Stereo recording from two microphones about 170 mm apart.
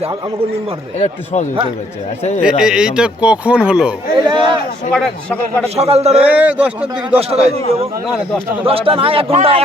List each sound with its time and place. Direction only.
0.9 s speech: 45° left (ahead or behind)
2.4 s speech: 5° right (ahead or behind)
4.3 s speech: 30° right (ahead or behind)
4.9 s a man's voice: 5° left (ahead or behind)
5.6 s a man's voice: 35° right (ahead or behind)
6.2 s a man's voice: 10° right (ahead or behind)
7.2 s a man's voice: 35° right (ahead or behind)